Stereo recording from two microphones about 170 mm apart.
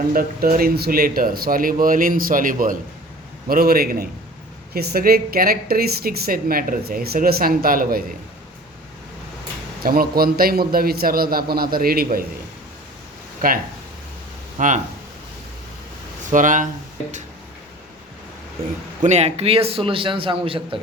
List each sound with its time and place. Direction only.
0.1 s speech: 60° right (ahead or behind)
3.5 s speech: 65° right (ahead or behind)
9.8 s speech: 60° right (ahead or behind)
13.4 s speech: 55° right (ahead or behind)
14.6 s speech: 50° right (ahead or behind)
16.2 s speech: 50° right (ahead or behind)
19.0 s a man's voice: 40° right (ahead or behind)